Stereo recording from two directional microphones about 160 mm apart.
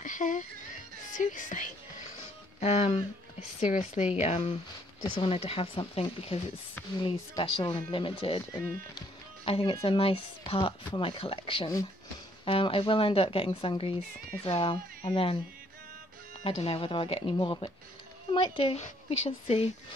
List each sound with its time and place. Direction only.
0.0 s music: 55° left (ahead or behind)
2.6 s speech: 40° left (ahead or behind)
9.4 s speech: 35° left (ahead or behind)
16.4 s speech: 35° left (ahead or behind)